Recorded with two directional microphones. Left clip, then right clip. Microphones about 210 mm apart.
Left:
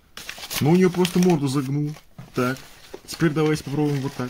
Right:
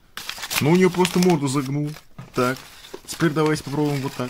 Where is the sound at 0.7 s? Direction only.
25° left (ahead or behind).